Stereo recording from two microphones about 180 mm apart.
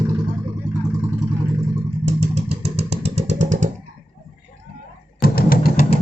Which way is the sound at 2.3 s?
35° right (ahead or behind).